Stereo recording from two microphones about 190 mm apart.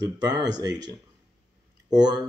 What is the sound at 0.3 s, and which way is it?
Speech, 20° right (ahead or behind).